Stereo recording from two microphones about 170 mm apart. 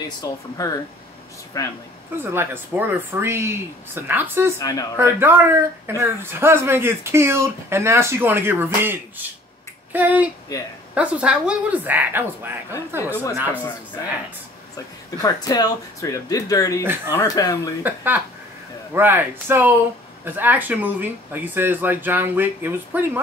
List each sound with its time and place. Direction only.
0.6 s speech: 20° left (ahead or behind)
2.1 s speech: 15° right (ahead or behind)
4.6 s speech: 20° left (ahead or behind)
4.9 s speech: 15° right (ahead or behind)
15.0 s speech: 20° left (ahead or behind)
17.8 s speech: 10° right (ahead or behind)